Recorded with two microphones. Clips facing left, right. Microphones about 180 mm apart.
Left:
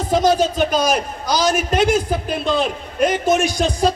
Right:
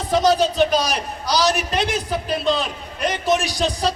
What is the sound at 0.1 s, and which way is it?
A man's voice, 50° left (ahead or behind).